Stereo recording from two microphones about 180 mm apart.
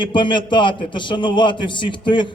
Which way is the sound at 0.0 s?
25° left (ahead or behind).